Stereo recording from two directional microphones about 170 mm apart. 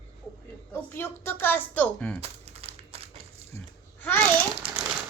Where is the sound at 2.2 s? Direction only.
35° right (ahead or behind).